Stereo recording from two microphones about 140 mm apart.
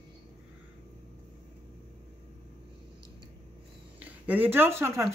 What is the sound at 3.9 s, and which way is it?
Speech, 10° right (ahead or behind).